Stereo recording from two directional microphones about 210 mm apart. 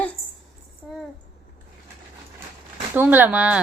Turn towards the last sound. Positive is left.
turn(degrees=-5)  # may be behind; listen again after turning